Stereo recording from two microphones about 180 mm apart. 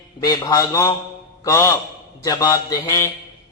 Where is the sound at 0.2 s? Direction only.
20° left (ahead or behind).